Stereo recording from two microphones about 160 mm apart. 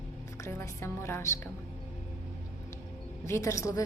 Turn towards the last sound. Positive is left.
turn(degrees=20)  # may be behind; listen again after turning